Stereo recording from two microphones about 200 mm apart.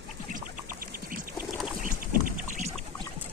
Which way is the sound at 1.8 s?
40° right (ahead or behind).